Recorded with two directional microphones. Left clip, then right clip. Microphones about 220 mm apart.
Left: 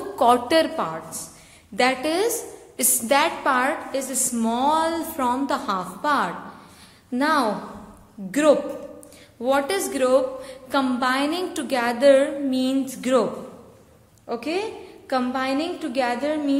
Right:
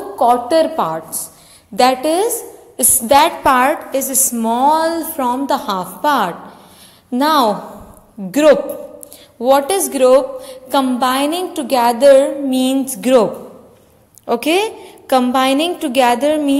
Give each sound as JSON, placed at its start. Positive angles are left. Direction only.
{"t": 0.2, "sound": "a woman's voice", "side_deg": 0}
{"t": 0.7, "sound": "a woman's voice", "side_deg": -20}
{"t": 14.2, "sound": "a woman's voice", "side_deg": -35}